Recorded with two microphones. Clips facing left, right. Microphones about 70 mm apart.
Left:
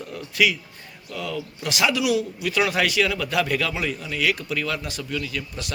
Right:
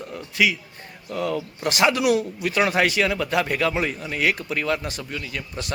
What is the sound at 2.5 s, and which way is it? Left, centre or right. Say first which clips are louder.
A man's voice: right 2 dB; right.